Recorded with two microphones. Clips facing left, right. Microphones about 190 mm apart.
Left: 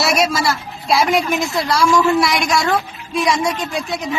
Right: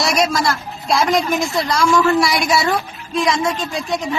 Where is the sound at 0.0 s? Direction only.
5° left (ahead or behind).